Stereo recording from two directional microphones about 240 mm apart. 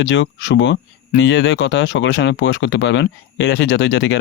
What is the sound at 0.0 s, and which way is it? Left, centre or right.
Speech, left.